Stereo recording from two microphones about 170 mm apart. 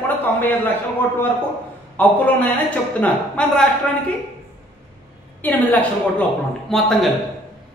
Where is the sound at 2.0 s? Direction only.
10° left (ahead or behind).